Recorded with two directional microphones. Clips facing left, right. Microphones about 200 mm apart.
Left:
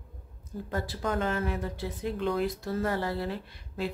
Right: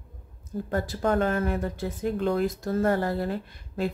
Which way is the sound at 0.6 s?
45° right (ahead or behind).